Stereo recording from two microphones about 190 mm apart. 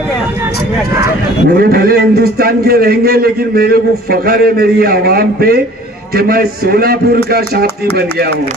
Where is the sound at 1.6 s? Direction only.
50° right (ahead or behind).